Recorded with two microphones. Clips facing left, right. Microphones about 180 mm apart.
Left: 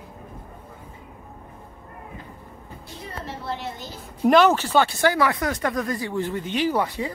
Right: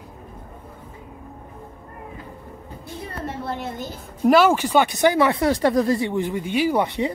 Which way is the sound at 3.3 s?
50° right (ahead or behind).